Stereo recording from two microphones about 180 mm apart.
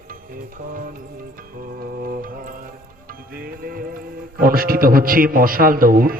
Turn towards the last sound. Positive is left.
turn(degrees=-55)  # may be behind; listen again after turning